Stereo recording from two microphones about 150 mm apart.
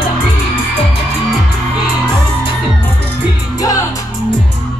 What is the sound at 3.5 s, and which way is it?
Music, 25° left (ahead or behind).